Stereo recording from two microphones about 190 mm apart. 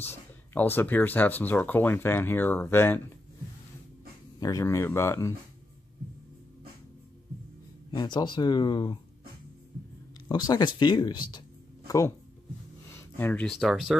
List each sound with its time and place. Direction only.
0.0 s speech: 10° left (ahead or behind)
4.4 s speech: 20° left (ahead or behind)
7.9 s speech: 20° left (ahead or behind)
10.2 s speech: 20° left (ahead or behind)
12.9 s speech: 10° left (ahead or behind)